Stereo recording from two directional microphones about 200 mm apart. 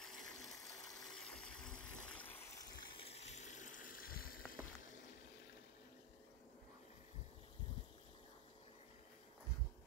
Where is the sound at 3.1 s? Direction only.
35° left (ahead or behind).